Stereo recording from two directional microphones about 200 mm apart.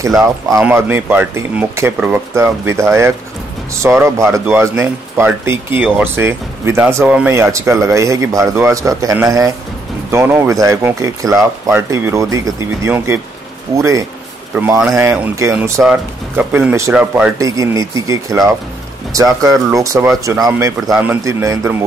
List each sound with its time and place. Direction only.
0.6 s speech: 10° right (ahead or behind)